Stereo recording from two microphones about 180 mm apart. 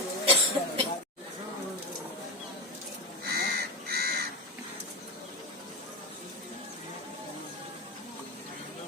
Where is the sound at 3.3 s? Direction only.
60° right (ahead or behind).